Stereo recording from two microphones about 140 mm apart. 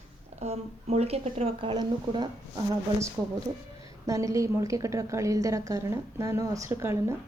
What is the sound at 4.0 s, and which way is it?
A woman's voice, 25° right (ahead or behind).